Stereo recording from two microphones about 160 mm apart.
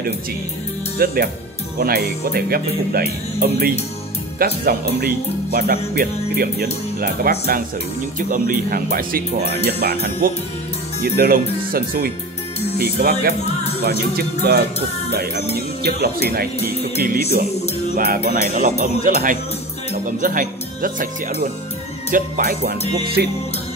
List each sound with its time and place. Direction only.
0.9 s speech: 70° right (ahead or behind)
15.8 s speech: 75° right (ahead or behind)
22.1 s speech: 65° right (ahead or behind)
23.2 s music: 80° right